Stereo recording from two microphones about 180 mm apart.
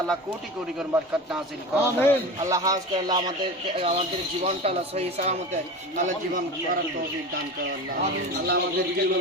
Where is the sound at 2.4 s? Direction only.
20° right (ahead or behind); by 6.4 s 45° right (ahead or behind).